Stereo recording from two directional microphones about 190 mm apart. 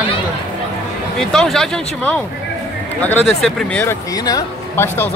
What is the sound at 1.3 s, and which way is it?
Speech, 5° left (ahead or behind).